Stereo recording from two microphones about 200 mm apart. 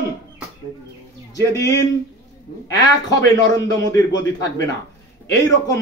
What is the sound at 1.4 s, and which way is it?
Speech, 15° left (ahead or behind).